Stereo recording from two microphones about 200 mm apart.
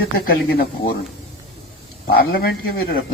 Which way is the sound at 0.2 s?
50° left (ahead or behind).